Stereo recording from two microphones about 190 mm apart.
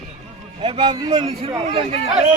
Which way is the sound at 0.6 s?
25° right (ahead or behind).